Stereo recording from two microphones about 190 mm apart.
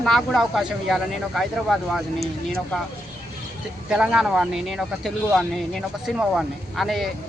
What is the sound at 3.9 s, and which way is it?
Speech, 5° right (ahead or behind).